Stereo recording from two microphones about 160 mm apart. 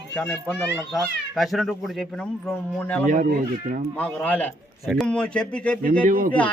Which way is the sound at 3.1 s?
55° right (ahead or behind).